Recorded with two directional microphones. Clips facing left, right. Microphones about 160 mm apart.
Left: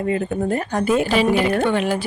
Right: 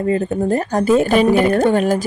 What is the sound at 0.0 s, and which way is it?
Speech, 35° right (ahead or behind).